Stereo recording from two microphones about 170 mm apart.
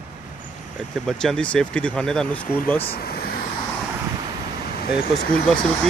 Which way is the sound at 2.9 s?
65° left (ahead or behind).